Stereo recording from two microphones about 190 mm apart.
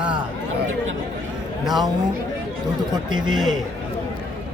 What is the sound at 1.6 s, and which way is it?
Speech, centre (ahead or behind).